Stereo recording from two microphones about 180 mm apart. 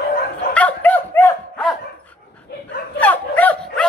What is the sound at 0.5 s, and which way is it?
Dog, 10° left (ahead or behind).